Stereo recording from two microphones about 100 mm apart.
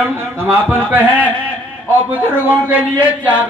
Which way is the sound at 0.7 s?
20° right (ahead or behind).